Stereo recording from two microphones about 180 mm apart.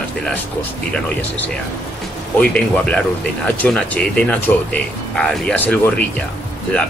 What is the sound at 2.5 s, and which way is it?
Speech, 5° left (ahead or behind).